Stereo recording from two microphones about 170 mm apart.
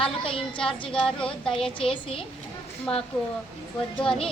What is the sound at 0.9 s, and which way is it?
Speech, 5° left (ahead or behind).